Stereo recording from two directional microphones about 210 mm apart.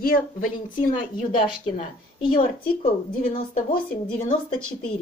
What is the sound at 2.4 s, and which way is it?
A woman's voice, 40° left (ahead or behind).